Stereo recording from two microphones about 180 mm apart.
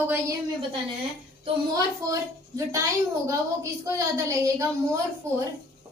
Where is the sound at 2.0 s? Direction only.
15° right (ahead or behind).